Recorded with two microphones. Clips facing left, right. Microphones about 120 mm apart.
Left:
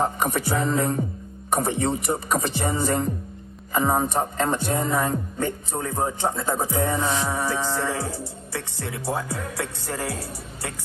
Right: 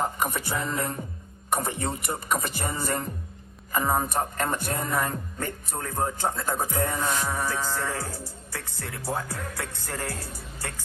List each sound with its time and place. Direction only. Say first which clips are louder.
0.0 s music: left 4 dB; 25° left (ahead or behind)